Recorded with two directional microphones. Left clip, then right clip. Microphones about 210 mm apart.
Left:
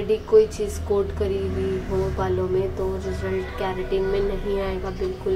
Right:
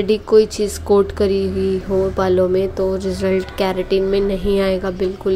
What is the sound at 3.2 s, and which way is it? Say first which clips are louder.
Speech: right 10 dB; 50° right (ahead or behind).